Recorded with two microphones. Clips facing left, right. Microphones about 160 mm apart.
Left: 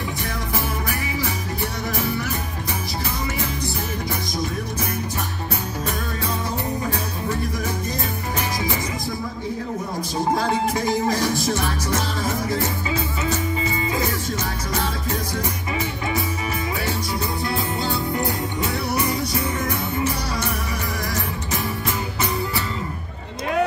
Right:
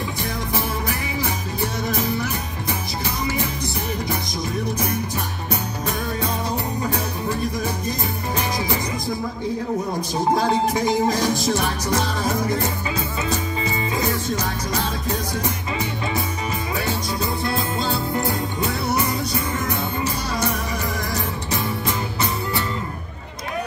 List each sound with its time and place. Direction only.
1.6 s music: 20° right (ahead or behind)
10.9 s music: 20° right (ahead or behind)